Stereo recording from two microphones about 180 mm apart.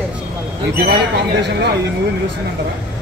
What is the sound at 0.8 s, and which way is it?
Speech, 65° right (ahead or behind).